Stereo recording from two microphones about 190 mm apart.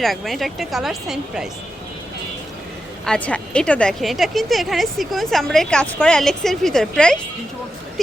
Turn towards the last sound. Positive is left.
turn(degrees=5)  # may be behind; listen again after turning